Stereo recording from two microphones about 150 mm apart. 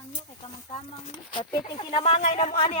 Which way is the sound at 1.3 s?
30° left (ahead or behind).